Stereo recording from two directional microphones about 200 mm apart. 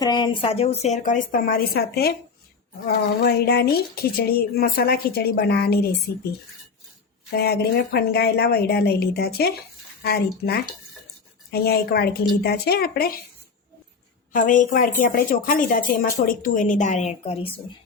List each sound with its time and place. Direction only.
0.0 s a woman's voice: 20° left (ahead or behind); by 5.9 s 50° left (ahead or behind)
7.3 s a woman's voice: 50° left (ahead or behind)
14.3 s a woman's voice: 40° left (ahead or behind)